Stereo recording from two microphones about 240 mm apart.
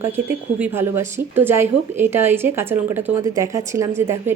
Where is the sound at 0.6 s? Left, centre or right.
Centre.